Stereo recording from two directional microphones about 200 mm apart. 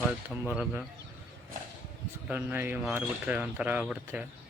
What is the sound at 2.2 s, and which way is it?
Speech, 10° right (ahead or behind).